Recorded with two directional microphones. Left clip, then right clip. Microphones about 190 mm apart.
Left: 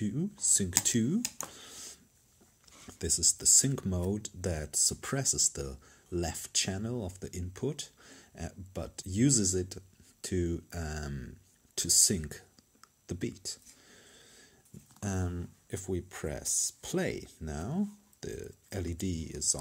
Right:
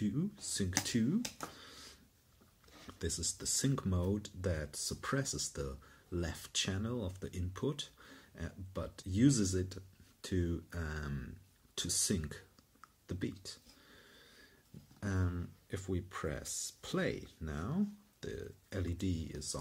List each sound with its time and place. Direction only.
0.0 s computer keyboard: 25° left (ahead or behind)
2.9 s speech: 30° left (ahead or behind)